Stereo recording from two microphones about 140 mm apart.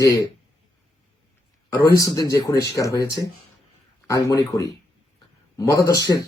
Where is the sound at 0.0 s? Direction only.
25° left (ahead or behind).